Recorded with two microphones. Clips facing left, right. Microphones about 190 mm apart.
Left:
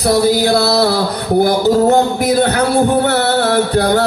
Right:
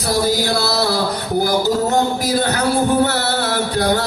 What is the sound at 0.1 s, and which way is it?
Music, 65° left (ahead or behind).